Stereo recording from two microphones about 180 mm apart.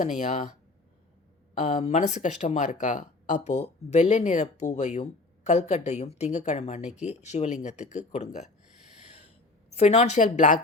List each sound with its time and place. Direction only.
0.0 s speech: 40° left (ahead or behind)
1.5 s speech: 35° left (ahead or behind)
9.0 s gasp: 40° left (ahead or behind)
9.7 s speech: 40° left (ahead or behind)